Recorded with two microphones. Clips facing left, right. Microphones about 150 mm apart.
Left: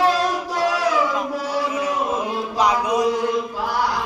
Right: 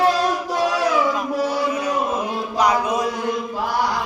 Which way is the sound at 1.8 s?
20° left (ahead or behind).